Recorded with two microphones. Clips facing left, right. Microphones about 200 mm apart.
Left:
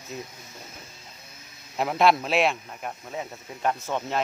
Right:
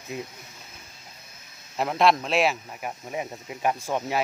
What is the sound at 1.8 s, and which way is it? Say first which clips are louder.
Speech: even; centre (ahead or behind).